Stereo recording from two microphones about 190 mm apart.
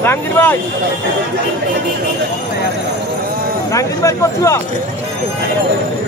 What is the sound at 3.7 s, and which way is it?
Speech, 15° left (ahead or behind).